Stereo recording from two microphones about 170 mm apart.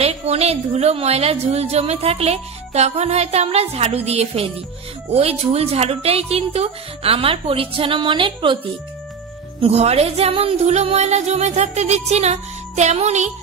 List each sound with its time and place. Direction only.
0.0 s a woman's voice: 35° right (ahead or behind)
9.6 s a woman's voice: 40° right (ahead or behind)